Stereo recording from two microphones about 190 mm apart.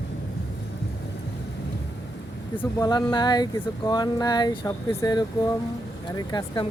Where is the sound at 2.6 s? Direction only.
20° left (ahead or behind).